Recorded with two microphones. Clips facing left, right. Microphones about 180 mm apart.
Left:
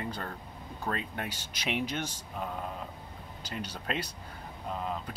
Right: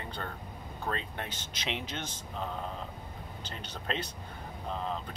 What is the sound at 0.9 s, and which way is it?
Speech, 10° left (ahead or behind).